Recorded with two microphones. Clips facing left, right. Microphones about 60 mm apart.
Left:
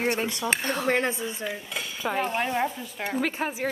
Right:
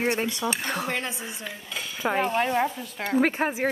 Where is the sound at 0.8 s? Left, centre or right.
Left.